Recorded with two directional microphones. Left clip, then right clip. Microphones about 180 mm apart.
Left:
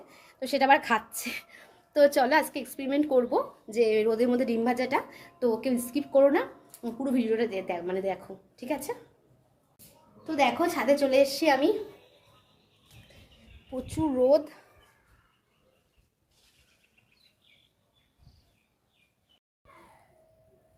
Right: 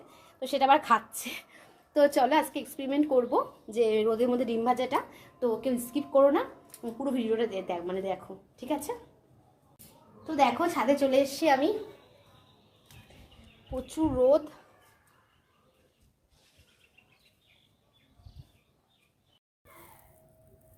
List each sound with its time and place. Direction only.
0.1 s a woman's voice: 20° left (ahead or behind)
10.2 s a woman's voice: 15° left (ahead or behind)
14.3 s a woman's voice: 10° left (ahead or behind)